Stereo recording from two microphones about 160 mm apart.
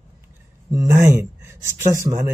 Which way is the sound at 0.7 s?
20° right (ahead or behind).